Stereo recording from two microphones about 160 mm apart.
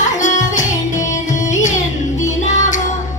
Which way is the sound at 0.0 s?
50° left (ahead or behind).